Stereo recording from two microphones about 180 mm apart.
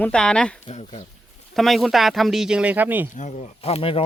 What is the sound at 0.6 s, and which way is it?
Speech, 40° left (ahead or behind).